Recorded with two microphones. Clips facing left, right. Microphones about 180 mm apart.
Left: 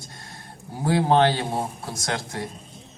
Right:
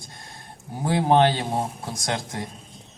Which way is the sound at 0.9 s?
20° right (ahead or behind).